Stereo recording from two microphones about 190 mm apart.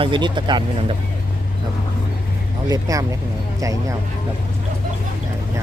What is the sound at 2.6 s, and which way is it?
Speech, 20° right (ahead or behind).